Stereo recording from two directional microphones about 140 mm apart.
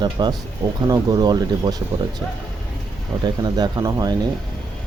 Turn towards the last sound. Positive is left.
turn(degrees=-25)  # may be behind; listen again after turning